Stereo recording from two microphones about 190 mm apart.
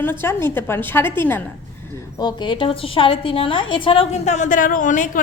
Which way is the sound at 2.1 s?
25° left (ahead or behind).